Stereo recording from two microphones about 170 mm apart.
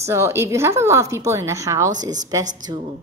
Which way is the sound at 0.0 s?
15° right (ahead or behind).